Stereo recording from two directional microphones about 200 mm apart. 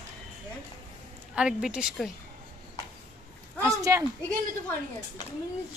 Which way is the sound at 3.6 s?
15° right (ahead or behind).